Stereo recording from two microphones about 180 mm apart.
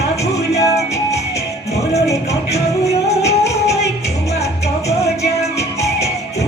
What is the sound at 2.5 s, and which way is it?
Music, 35° left (ahead or behind).